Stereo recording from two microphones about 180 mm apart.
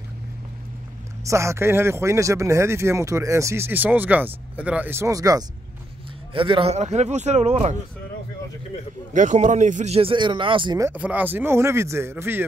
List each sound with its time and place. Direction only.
1.2 s speech: 15° right (ahead or behind); by 7.7 s 40° right (ahead or behind)
9.1 s speech: 45° right (ahead or behind); by 10.9 s 25° right (ahead or behind)
10.9 s speech: 10° right (ahead or behind)